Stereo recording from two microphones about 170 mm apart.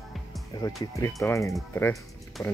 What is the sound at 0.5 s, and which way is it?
Speech, 20° left (ahead or behind).